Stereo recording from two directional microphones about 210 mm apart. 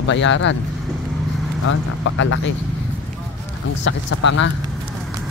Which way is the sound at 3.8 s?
60° left (ahead or behind).